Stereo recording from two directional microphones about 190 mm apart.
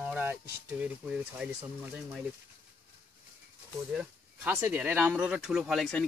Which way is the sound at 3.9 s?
10° right (ahead or behind).